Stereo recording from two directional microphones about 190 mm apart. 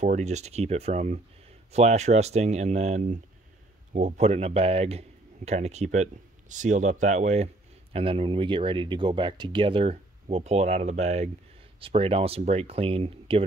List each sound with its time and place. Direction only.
0.0 s a man's voice: 40° right (ahead or behind)